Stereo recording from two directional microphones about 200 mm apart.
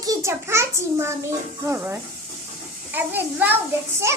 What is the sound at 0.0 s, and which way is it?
A child's voice, 15° right (ahead or behind).